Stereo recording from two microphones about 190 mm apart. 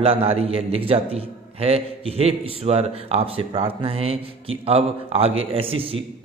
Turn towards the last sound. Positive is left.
turn(degrees=-30)  # may be behind; listen again after turning